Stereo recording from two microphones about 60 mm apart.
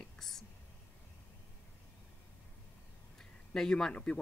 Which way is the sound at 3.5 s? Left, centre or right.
Centre.